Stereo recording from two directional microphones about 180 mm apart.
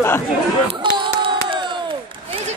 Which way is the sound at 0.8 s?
25° right (ahead or behind).